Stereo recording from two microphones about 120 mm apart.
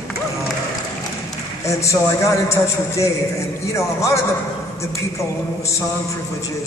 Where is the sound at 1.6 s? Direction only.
25° left (ahead or behind).